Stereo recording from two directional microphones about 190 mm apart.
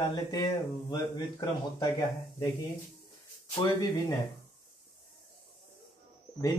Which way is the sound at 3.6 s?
20° left (ahead or behind).